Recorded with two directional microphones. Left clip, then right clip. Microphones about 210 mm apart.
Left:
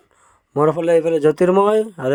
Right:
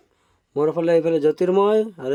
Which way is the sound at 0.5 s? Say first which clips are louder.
Left 3 dB; 20° left (ahead or behind).